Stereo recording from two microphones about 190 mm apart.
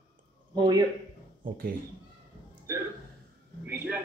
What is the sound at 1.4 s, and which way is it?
Speech, 50° right (ahead or behind).